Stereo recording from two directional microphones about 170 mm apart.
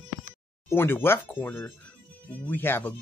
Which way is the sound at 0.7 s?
15° left (ahead or behind).